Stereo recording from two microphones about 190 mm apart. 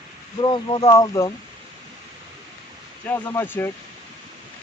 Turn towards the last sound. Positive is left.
turn(degrees=10)  # may be behind; listen again after turning